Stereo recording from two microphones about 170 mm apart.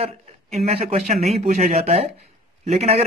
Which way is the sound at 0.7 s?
35° right (ahead or behind).